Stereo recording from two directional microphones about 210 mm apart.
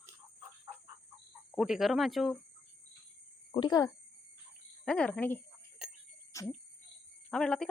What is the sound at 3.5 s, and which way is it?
Speech, 20° left (ahead or behind).